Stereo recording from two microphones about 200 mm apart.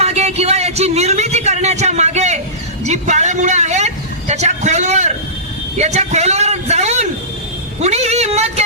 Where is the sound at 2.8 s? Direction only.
35° right (ahead or behind).